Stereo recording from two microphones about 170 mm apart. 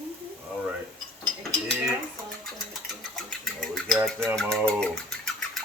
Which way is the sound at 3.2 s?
5° left (ahead or behind).